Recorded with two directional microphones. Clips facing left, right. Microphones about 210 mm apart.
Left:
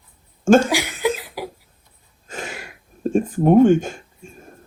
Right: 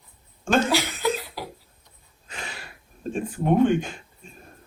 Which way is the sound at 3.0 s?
50° left (ahead or behind).